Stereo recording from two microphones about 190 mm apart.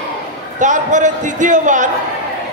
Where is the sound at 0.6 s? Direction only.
40° right (ahead or behind).